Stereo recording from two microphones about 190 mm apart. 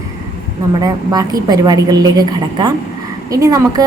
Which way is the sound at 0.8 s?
20° right (ahead or behind).